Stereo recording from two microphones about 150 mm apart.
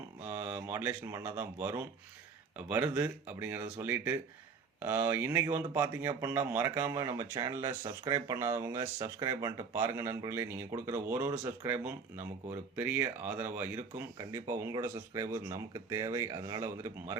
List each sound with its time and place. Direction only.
0.3 s speech: 15° right (ahead or behind)